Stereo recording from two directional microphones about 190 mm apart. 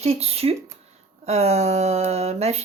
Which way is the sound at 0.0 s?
35° right (ahead or behind).